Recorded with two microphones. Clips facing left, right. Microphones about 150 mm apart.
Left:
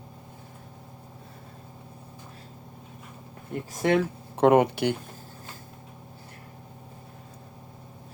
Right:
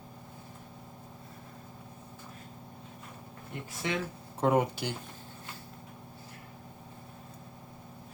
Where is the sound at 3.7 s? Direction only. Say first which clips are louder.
Left 11 dB; 45° left (ahead or behind).